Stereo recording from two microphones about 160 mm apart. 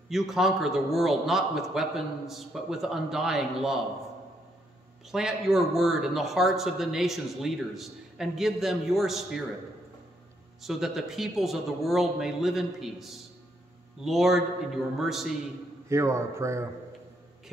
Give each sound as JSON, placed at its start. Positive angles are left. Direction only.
{"t": 0.1, "sound": "speech", "side_deg": 0}
{"t": 5.1, "sound": "speech", "side_deg": 0}
{"t": 10.6, "sound": "speech", "side_deg": 0}
{"t": 15.9, "sound": "a man's voice", "side_deg": -20}